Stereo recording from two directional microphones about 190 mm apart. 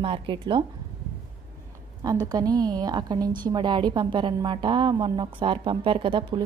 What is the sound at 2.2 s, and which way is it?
A woman's voice, 20° right (ahead or behind).